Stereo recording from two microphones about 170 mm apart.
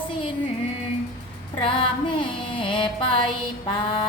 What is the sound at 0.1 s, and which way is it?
Music, 30° left (ahead or behind).